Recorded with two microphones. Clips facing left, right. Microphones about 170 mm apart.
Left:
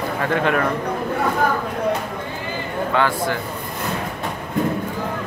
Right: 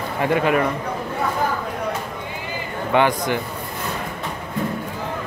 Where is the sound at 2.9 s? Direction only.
20° right (ahead or behind).